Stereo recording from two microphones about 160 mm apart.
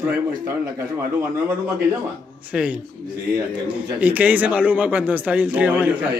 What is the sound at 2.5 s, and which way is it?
A man's voice, 5° right (ahead or behind).